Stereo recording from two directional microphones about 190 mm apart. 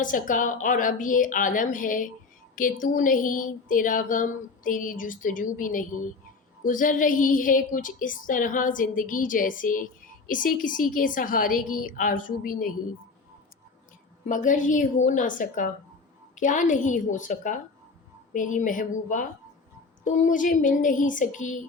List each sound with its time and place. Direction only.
0.0 s a woman's voice: 45° left (ahead or behind)
14.3 s a woman's voice: 45° left (ahead or behind)